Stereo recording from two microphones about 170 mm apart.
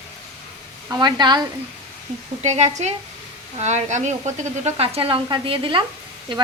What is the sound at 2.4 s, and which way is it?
A woman's voice, 40° right (ahead or behind).